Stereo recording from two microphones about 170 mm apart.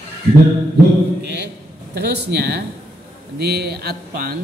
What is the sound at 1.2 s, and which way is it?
Speech, 85° right.